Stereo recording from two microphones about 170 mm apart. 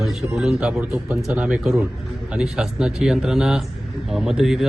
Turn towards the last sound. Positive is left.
turn(degrees=0)  # may be behind; listen again after turning